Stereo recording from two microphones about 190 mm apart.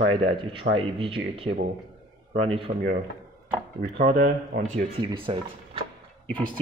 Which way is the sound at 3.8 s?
45° right (ahead or behind).